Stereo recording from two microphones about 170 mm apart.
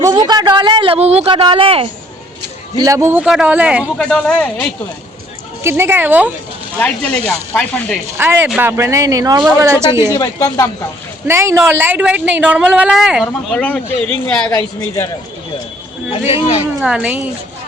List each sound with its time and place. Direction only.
0.0 s a man's voice: 20° right (ahead or behind)
2.7 s speech: 20° right (ahead or behind)
3.9 s speech: 5° left (ahead or behind)
5.6 s speech: 15° right (ahead or behind)
6.7 s speech: 5° left (ahead or behind)
8.2 s speech: 10° right (ahead or behind)
10.2 s speech: 20° left (ahead or behind)
11.3 s speech: 15° right (ahead or behind)
13.2 s speech: 10° left (ahead or behind)
16.8 s speech: 5° right (ahead or behind)